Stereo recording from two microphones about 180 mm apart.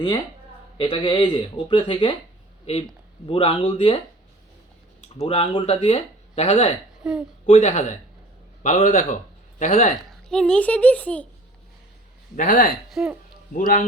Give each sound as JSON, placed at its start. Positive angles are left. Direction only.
{"t": 0.8, "sound": "speech", "side_deg": 25}
{"t": 3.2, "sound": "speech", "side_deg": 30}
{"t": 5.1, "sound": "speech", "side_deg": 30}
{"t": 7.0, "sound": "speech", "side_deg": -5}
{"t": 7.4, "sound": "a man's voice", "side_deg": 35}
{"t": 10.1, "sound": "a child's voice", "side_deg": 5}
{"t": 12.4, "sound": "a man's voice", "side_deg": 45}
{"t": 12.9, "sound": "a sound", "side_deg": 0}
{"t": 13.5, "sound": "a man's voice", "side_deg": 45}